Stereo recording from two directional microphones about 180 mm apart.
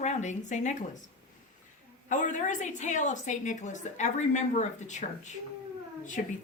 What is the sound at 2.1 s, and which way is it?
A woman's voice, 45° left (ahead or behind).